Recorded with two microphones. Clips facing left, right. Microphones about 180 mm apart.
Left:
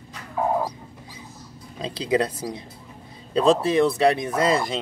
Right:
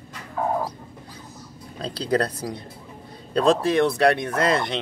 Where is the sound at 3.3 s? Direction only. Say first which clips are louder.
Left 1 dB; centre (ahead or behind).